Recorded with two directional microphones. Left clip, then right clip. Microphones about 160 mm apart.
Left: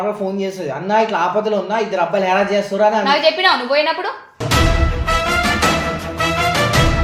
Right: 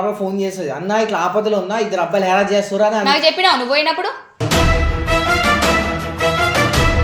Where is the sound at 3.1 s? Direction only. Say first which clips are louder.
Even; 20° right (ahead or behind).